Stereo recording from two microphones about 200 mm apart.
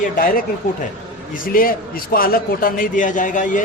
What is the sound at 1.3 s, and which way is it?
A man's voice, 45° left (ahead or behind).